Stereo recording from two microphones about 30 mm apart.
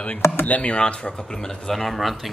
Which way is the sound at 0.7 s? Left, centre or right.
Left.